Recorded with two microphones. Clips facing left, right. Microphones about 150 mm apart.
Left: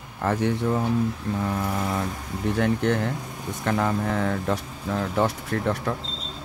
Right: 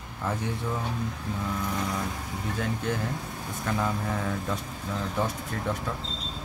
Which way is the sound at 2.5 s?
65° left (ahead or behind).